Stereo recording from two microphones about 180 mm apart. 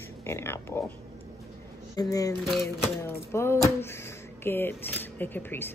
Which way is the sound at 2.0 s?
20° left (ahead or behind).